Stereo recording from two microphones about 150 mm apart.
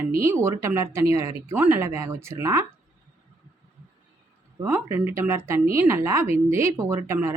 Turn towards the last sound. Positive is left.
turn(degrees=-15)  # may be behind; listen again after turning